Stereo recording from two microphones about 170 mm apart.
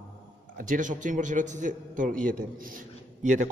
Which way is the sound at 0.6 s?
50° right (ahead or behind).